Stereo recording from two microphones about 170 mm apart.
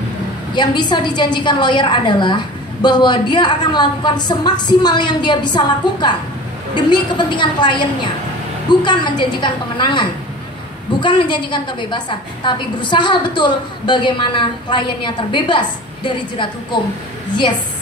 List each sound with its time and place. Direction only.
0.6 s a woman's voice: 25° left (ahead or behind)